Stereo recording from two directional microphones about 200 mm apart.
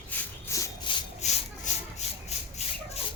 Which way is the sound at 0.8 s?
35° left (ahead or behind).